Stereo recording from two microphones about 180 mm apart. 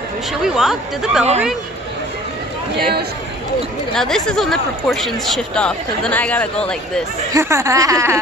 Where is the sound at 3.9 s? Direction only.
Centre (ahead or behind).